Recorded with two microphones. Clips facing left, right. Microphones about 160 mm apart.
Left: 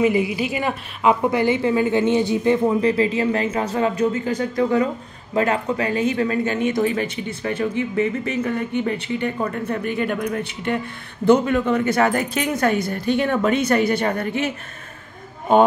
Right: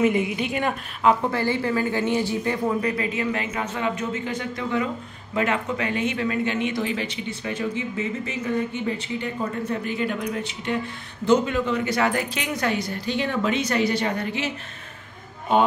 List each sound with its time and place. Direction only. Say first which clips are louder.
0.0 s a woman's voice: left 3 dB; centre (ahead or behind)
1.3 s a woman's voice: left 5 dB; 20° left (ahead or behind); by 14.5 s 50° left (ahead or behind)